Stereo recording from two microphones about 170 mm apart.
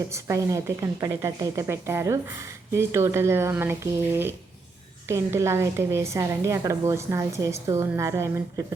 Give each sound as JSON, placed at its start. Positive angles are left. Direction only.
{"t": 0.1, "sound": "a woman's voice", "side_deg": -20}